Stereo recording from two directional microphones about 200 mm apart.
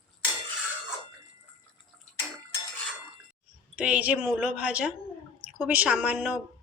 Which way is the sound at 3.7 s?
5° right (ahead or behind).